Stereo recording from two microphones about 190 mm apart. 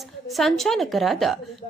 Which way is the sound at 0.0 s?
Centre (ahead or behind).